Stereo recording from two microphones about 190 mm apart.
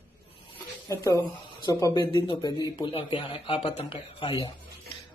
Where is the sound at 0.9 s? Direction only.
15° left (ahead or behind).